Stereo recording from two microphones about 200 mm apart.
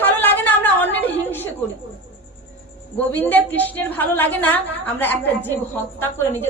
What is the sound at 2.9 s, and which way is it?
A woman's voice, 10° left (ahead or behind).